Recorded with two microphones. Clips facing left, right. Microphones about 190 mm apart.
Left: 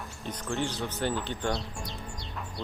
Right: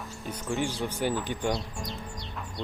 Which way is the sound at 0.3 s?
10° right (ahead or behind).